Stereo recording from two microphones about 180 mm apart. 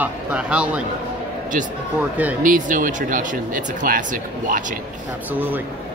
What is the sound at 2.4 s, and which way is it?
Speech, 45° right (ahead or behind).